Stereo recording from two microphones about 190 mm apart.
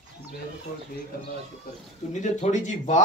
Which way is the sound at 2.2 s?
40° left (ahead or behind).